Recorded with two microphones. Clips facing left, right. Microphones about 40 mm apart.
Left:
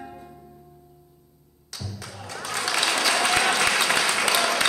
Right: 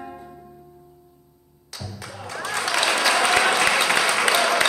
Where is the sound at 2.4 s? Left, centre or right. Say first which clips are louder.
Right 3 dB; centre.